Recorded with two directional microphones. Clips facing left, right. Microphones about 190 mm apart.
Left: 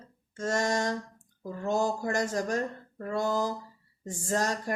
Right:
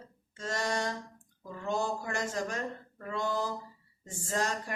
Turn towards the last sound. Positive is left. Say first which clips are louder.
# left 4 dB
turn(degrees=40)  # may be behind; listen again after turning